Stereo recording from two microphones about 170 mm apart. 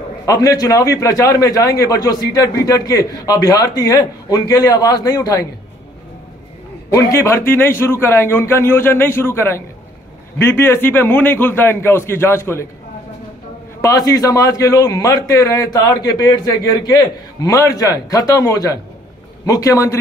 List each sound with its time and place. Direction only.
0.2 s a man's voice: 20° left (ahead or behind)
6.9 s a man's voice: 20° left (ahead or behind)
13.7 s a man's voice: 20° left (ahead or behind)